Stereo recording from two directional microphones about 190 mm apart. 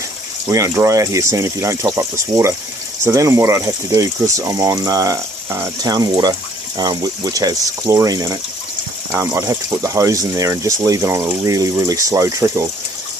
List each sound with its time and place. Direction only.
0.5 s speech: 15° right (ahead or behind)